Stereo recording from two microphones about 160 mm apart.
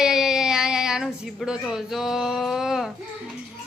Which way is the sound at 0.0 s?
5° right (ahead or behind).